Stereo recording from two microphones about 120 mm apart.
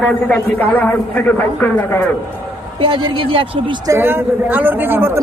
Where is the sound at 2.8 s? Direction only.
45° right (ahead or behind).